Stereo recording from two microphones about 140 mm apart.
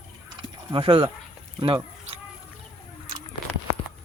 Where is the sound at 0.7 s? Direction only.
40° right (ahead or behind).